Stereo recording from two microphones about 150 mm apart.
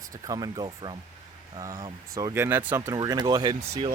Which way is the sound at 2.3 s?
15° right (ahead or behind).